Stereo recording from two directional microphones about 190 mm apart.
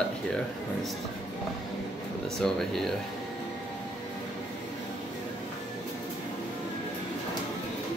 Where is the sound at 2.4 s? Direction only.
Centre (ahead or behind).